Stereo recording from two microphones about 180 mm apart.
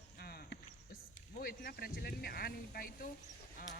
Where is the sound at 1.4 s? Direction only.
55° left (ahead or behind).